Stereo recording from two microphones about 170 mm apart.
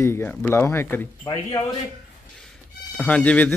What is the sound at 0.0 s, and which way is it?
A man's voice, 15° left (ahead or behind).